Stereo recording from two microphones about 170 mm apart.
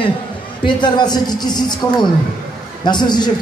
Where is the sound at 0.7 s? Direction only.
25° left (ahead or behind).